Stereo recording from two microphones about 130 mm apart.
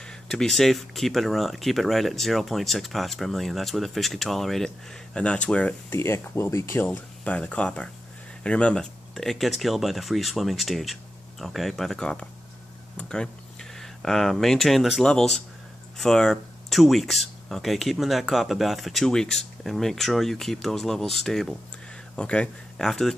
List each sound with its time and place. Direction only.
0.0 s speech: 5° left (ahead or behind)